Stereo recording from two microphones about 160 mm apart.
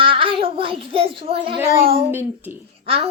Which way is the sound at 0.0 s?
35° right (ahead or behind).